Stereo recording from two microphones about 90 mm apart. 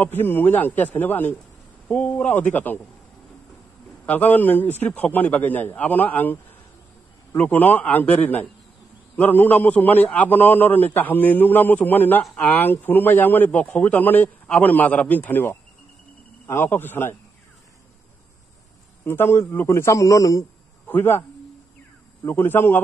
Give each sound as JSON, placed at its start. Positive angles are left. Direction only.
{"t": 0.0, "sound": "a man's voice", "side_deg": 25}
{"t": 4.0, "sound": "a man's voice", "side_deg": 20}
{"t": 7.3, "sound": "a man's voice", "side_deg": 20}
{"t": 19.0, "sound": "a man's voice", "side_deg": 25}
{"t": 20.8, "sound": "a man's voice", "side_deg": 25}
{"t": 22.3, "sound": "a man's voice", "side_deg": 25}